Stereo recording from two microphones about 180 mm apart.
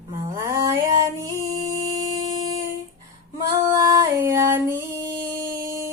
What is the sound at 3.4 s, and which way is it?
Female singing, 20° right (ahead or behind).